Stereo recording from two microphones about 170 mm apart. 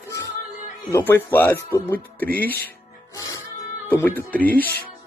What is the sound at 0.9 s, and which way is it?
Speech, 10° left (ahead or behind).